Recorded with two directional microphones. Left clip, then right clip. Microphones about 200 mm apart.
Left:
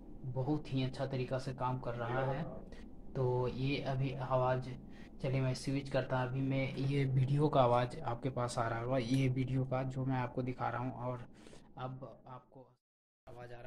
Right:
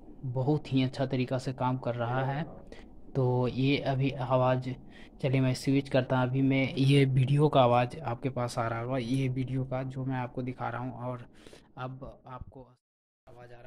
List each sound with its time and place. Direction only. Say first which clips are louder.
0.4 s speech: right 8 dB; 60° right (ahead or behind)
7.2 s speech: right 3 dB; 35° right (ahead or behind)